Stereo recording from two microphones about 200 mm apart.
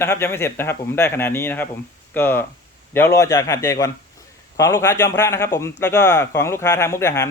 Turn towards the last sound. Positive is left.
turn(degrees=15)  # may be behind; listen again after turning